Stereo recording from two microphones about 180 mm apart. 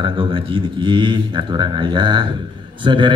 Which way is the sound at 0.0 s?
25° right (ahead or behind).